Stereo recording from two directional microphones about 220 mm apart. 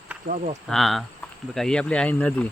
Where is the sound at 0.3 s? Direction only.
45° right (ahead or behind).